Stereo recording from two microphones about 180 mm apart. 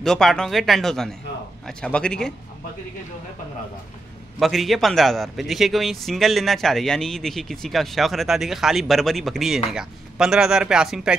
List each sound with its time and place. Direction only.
0.0 s a man's voice: centre (ahead or behind)
4.4 s a man's voice: centre (ahead or behind)